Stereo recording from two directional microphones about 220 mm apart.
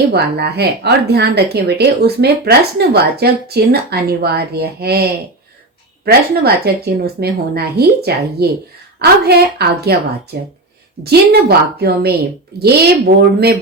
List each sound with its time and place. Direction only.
0.1 s speech: 50° right (ahead or behind)